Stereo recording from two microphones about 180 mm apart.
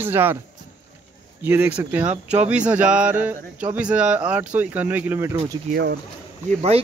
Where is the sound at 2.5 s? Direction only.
5° right (ahead or behind).